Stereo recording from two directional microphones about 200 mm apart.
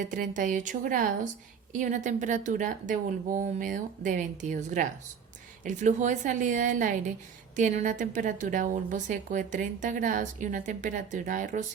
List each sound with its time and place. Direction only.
0.0 s a woman's voice: 40° right (ahead or behind)